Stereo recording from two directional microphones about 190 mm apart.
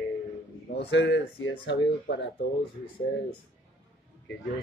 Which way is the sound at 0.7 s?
65° left (ahead or behind).